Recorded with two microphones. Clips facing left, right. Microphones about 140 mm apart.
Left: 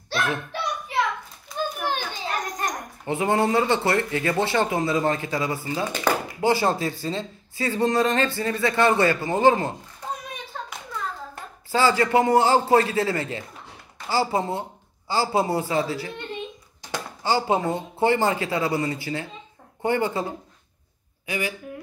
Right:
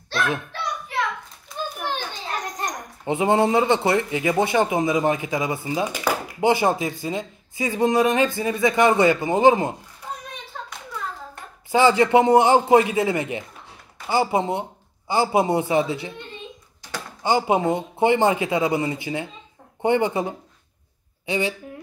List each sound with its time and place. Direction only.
1.8 s children playing: 10° left (ahead or behind)
2.6 s speech: 20° right (ahead or behind)
10.5 s hands: centre (ahead or behind)
11.7 s speech: 20° right (ahead or behind)
17.2 s speech: 20° right (ahead or behind)